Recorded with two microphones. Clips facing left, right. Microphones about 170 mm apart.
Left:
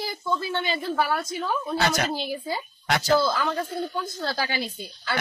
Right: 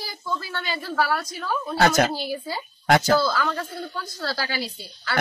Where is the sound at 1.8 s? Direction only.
50° right (ahead or behind).